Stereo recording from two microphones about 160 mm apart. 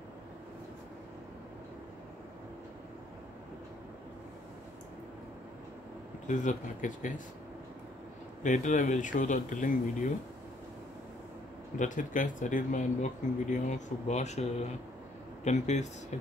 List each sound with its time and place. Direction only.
6.2 s speech: 50° left (ahead or behind)
8.4 s speech: 50° left (ahead or behind)
11.8 s speech: 55° left (ahead or behind)